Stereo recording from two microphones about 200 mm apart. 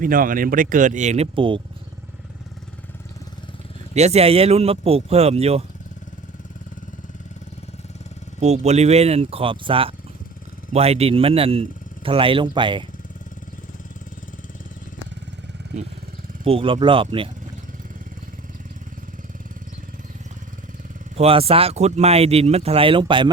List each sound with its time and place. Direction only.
0.0 s speech: 45° right (ahead or behind); by 1.6 s 25° right (ahead or behind)
3.9 s speech: 35° right (ahead or behind)
8.4 s speech: 35° right (ahead or behind)
16.4 s speech: 25° right (ahead or behind)
21.2 s speech: 30° right (ahead or behind)